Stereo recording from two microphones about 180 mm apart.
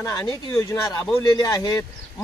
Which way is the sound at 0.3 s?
20° left (ahead or behind).